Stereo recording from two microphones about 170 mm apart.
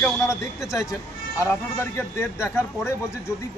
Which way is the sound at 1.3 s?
15° left (ahead or behind).